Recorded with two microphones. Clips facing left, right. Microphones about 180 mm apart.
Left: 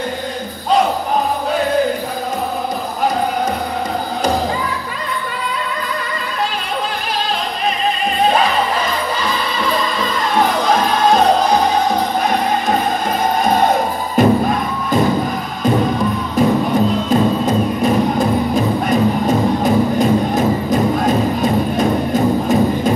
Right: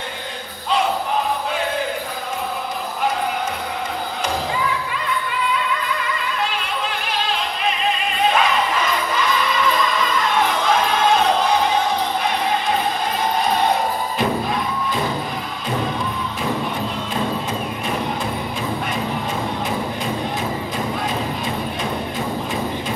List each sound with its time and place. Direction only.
8.3 s music: 35° left (ahead or behind)
13.4 s music: 45° left (ahead or behind)
16.3 s music: 40° left (ahead or behind)